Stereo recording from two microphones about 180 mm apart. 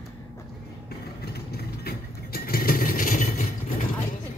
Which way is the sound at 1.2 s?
60° left (ahead or behind).